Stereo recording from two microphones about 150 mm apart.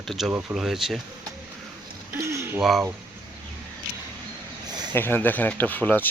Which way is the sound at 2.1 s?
20° right (ahead or behind).